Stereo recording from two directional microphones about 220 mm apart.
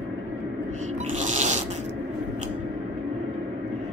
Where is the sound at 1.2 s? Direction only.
35° right (ahead or behind).